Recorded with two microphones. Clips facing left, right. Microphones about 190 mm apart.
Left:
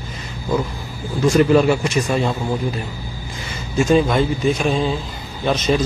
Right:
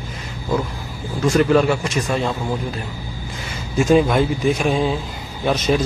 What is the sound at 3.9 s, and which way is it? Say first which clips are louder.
A man's voice: right 1 dB; 5° right (ahead or behind).